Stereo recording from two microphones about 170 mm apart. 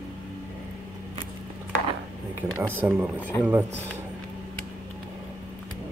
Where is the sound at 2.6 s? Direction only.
10° right (ahead or behind).